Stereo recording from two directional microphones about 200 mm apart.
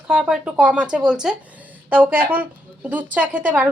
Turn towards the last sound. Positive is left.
turn(degrees=-5)  # may be behind; listen again after turning